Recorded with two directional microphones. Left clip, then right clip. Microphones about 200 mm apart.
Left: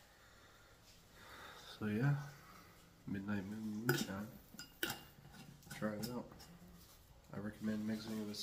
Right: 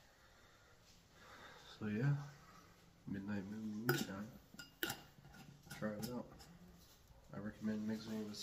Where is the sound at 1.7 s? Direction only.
15° left (ahead or behind).